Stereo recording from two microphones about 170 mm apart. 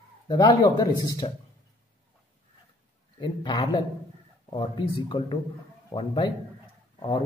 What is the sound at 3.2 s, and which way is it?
Speech, 25° left (ahead or behind).